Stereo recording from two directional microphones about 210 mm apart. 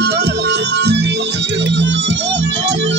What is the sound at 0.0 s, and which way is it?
Music, 50° right (ahead or behind).